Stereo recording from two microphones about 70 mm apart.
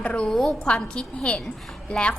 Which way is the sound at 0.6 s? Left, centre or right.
Centre.